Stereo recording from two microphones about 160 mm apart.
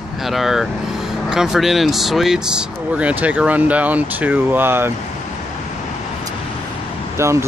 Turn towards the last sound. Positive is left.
turn(degrees=-20)  # may be behind; listen again after turning